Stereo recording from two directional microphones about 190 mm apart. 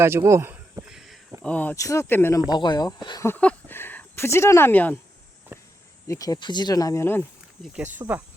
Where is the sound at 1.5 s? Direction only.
10° left (ahead or behind).